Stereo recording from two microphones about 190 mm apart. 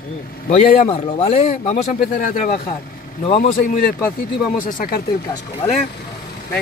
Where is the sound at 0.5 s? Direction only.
35° left (ahead or behind).